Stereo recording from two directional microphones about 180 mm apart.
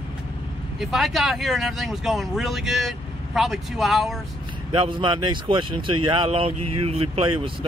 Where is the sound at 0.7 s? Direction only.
Centre (ahead or behind).